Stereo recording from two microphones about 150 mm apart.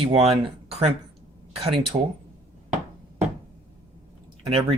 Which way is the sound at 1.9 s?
40° right (ahead or behind).